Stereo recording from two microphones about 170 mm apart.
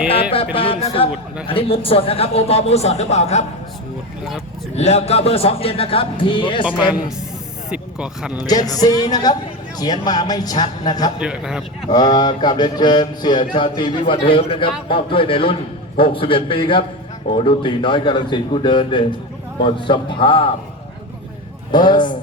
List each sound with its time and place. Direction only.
0.1 s a sound: 35° left (ahead or behind)
0.5 s a man's voice: 35° left (ahead or behind)
4.7 s a man's voice: 40° left (ahead or behind)
6.7 s a man's voice: 5° right (ahead or behind)
8.4 s a man's voice: 25° left (ahead or behind)
11.2 s a man's voice: 5° right (ahead or behind)
11.9 s a man's voice: 25° left (ahead or behind)
21.7 s a man's voice: 25° left (ahead or behind)